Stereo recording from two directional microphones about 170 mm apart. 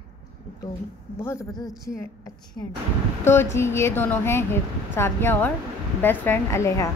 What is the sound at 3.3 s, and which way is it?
Speech, 15° left (ahead or behind).